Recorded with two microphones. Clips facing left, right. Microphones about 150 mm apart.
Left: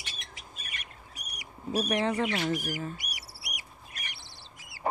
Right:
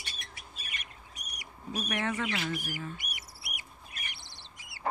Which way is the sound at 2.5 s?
40° left (ahead or behind).